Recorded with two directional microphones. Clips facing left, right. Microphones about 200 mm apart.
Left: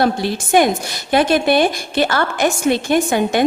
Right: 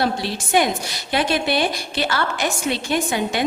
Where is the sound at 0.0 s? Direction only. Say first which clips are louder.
Left 5 dB; 50° left (ahead or behind).